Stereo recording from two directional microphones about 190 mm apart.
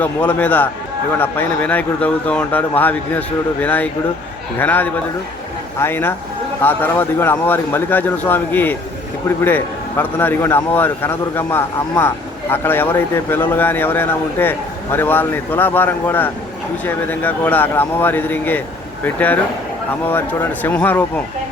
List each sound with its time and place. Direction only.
0.0 s a man's voice: 10° left (ahead or behind)